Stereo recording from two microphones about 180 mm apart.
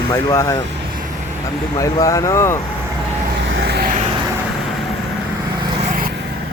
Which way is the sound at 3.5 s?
70° right (ahead or behind).